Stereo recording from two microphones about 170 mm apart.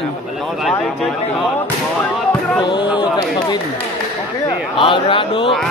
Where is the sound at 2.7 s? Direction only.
25° left (ahead or behind).